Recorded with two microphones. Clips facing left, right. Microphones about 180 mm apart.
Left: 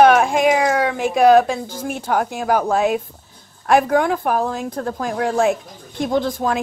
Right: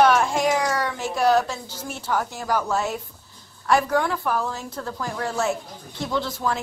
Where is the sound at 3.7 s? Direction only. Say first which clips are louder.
Left 5 dB; 50° left (ahead or behind).